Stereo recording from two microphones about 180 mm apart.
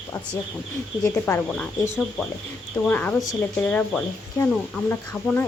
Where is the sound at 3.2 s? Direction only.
20° left (ahead or behind).